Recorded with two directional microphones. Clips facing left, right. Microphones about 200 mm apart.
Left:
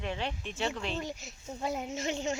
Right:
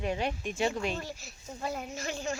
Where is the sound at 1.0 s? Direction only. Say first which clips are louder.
Left 2 dB; 20° left (ahead or behind).